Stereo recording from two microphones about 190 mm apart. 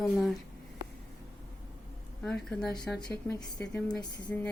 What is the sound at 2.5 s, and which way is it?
A woman's voice, 5° left (ahead or behind).